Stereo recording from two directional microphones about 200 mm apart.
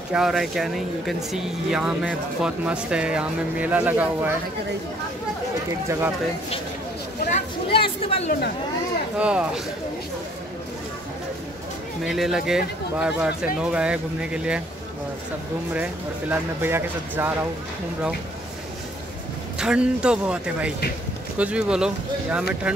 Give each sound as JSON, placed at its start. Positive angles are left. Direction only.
{"t": 0.1, "sound": "speech", "side_deg": 0}
{"t": 5.9, "sound": "speech", "side_deg": -10}
{"t": 7.3, "sound": "speech", "side_deg": 25}
{"t": 9.2, "sound": "speech", "side_deg": -5}
{"t": 12.0, "sound": "speech", "side_deg": 0}
{"t": 15.7, "sound": "speech", "side_deg": -10}
{"t": 19.6, "sound": "speech", "side_deg": -5}